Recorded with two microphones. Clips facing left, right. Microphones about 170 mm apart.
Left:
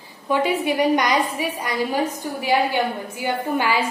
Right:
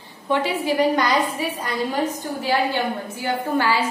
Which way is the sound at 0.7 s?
15° left (ahead or behind).